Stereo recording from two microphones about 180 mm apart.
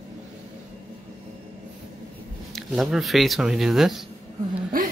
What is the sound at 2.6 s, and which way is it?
Speech, centre (ahead or behind).